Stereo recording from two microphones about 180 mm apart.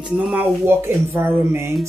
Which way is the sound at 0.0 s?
5° right (ahead or behind).